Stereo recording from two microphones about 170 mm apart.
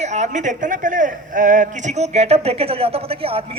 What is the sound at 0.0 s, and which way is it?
A man's voice, 45° right (ahead or behind).